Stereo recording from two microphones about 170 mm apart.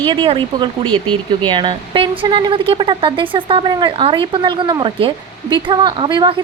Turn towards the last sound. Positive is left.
turn(degrees=-25)  # may be behind; listen again after turning